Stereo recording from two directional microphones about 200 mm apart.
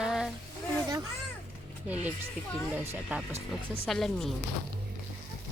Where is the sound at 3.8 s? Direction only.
Centre (ahead or behind).